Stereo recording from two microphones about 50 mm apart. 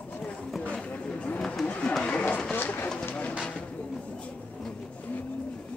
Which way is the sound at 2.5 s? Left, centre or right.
Left.